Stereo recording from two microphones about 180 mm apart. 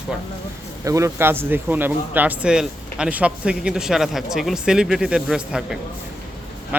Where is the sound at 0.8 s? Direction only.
15° right (ahead or behind).